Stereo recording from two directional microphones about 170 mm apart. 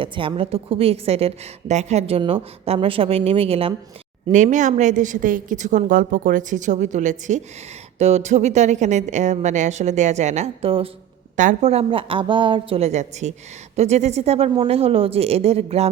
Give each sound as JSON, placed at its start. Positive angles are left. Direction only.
{"t": 0.0, "sound": "a woman's voice", "side_deg": -30}
{"t": 4.3, "sound": "a woman's voice", "side_deg": -45}
{"t": 11.3, "sound": "a woman's voice", "side_deg": -45}